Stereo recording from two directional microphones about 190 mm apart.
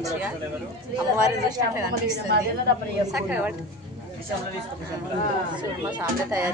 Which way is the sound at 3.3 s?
10° right (ahead or behind).